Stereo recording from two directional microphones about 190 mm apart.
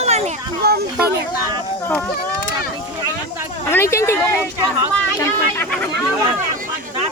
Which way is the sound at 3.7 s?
15° left (ahead or behind).